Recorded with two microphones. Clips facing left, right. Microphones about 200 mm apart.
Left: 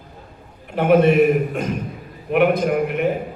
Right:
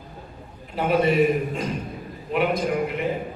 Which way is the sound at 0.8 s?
60° left (ahead or behind).